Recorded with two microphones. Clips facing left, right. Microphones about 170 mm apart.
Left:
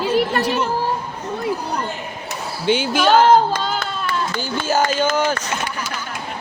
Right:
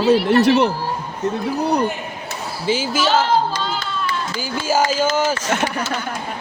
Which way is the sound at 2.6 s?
Centre (ahead or behind).